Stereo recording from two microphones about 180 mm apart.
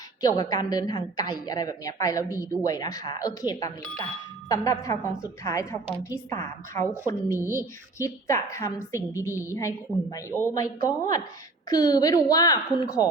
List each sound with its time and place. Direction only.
0.2 s a woman's voice: 20° left (ahead or behind)